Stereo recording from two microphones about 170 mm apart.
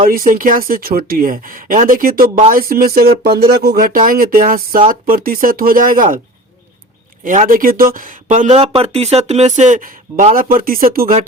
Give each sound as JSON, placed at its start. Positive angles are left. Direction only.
{"t": 0.0, "sound": "speech", "side_deg": -55}
{"t": 7.3, "sound": "speech", "side_deg": -50}